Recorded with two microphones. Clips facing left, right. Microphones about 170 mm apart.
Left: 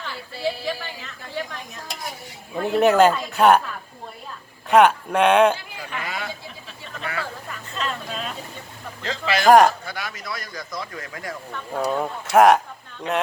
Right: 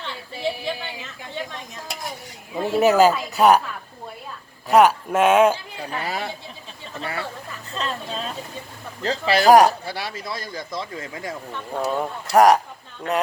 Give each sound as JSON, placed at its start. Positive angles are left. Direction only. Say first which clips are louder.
{"t": 0.0, "sound": "a sound", "louder": "even", "side_deg": -25}
{"t": 1.4, "sound": "speech", "louder": "left 2 dB", "side_deg": -20}
{"t": 2.7, "sound": "speech", "louder": "even", "side_deg": -5}
{"t": 4.7, "sound": "speech", "louder": "even", "side_deg": 0}
{"t": 5.7, "sound": "a man's voice", "louder": "right 3 dB", "side_deg": -35}
{"t": 11.7, "sound": "speech", "louder": "left 1 dB", "side_deg": 0}